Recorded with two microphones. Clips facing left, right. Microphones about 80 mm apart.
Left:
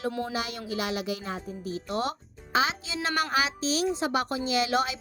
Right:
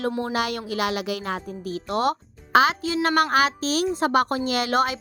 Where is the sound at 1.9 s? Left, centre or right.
Right.